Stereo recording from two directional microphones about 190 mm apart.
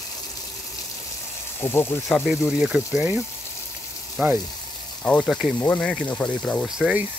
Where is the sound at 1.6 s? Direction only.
10° left (ahead or behind).